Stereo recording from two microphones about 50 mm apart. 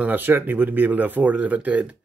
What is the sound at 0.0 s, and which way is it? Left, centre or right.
Speech, right.